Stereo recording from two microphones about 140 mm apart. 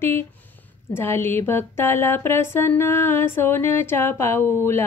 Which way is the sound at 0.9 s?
15° left (ahead or behind).